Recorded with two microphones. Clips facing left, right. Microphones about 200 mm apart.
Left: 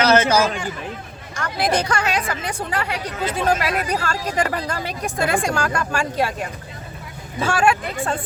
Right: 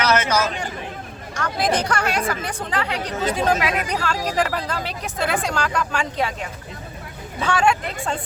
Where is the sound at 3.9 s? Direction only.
5° left (ahead or behind).